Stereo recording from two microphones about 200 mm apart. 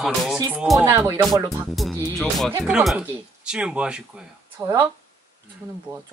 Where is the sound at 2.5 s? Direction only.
10° right (ahead or behind).